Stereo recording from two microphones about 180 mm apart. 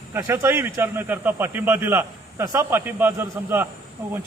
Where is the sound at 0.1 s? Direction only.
15° right (ahead or behind).